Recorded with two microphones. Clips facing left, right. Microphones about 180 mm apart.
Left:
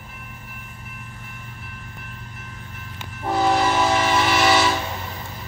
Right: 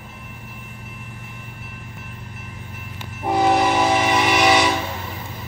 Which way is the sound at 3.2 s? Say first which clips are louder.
Right 2 dB; 20° right (ahead or behind).